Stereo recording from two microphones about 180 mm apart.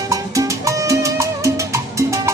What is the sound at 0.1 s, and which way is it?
Salsa music, 20° right (ahead or behind).